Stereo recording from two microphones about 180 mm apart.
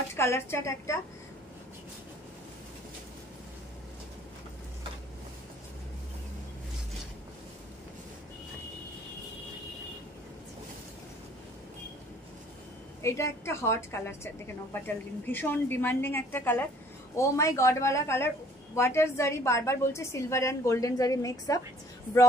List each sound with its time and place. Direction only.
0.1 s a woman's voice: 15° left (ahead or behind)
13.0 s a woman's voice: 15° left (ahead or behind)